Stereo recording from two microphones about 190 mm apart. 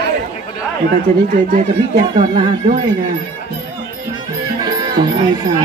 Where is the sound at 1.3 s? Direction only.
40° right (ahead or behind).